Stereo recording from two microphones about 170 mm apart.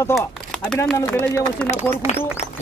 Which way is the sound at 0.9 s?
15° left (ahead or behind).